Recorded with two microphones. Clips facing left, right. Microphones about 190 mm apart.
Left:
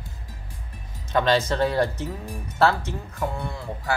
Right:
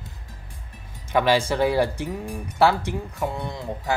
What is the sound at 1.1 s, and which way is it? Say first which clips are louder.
Speech: right 1 dB; 10° right (ahead or behind).